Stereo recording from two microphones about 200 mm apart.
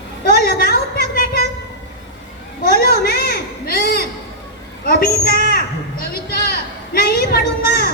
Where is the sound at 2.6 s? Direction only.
50° left (ahead or behind).